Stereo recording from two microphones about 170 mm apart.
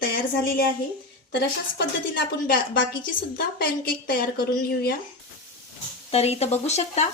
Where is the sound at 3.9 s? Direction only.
60° left (ahead or behind).